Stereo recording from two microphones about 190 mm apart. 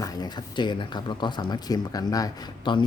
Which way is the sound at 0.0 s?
20° left (ahead or behind).